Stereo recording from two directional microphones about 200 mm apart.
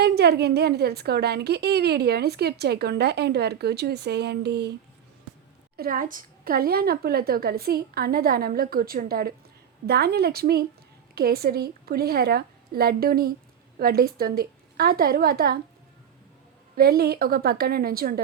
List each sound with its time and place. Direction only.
0.0 s a woman's voice: 55° right (ahead or behind)
5.7 s a woman's voice: 45° right (ahead or behind)
16.7 s a woman's voice: 50° right (ahead or behind)